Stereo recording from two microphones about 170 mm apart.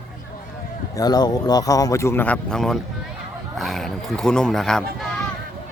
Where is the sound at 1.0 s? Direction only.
25° left (ahead or behind); by 5.1 s centre (ahead or behind).